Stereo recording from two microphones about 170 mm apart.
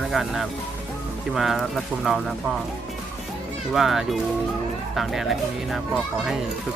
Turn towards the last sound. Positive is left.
turn(degrees=0)  # may be behind; listen again after turning